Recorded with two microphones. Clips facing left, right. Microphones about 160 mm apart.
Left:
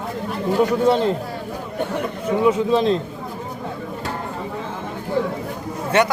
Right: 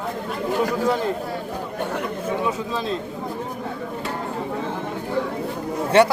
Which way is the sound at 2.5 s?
20° left (ahead or behind).